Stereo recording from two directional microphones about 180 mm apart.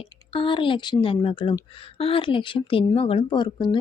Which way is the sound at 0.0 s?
30° left (ahead or behind).